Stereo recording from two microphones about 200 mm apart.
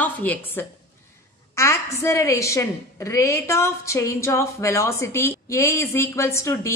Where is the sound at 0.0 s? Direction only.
10° left (ahead or behind).